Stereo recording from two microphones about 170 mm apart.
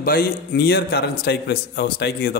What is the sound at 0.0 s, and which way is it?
A man's voice, 60° left (ahead or behind).